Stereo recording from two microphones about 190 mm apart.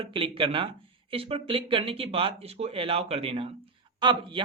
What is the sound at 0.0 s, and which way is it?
A man's voice, 25° right (ahead or behind).